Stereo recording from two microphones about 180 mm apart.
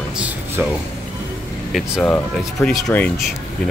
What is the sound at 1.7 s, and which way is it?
Speech, 5° left (ahead or behind).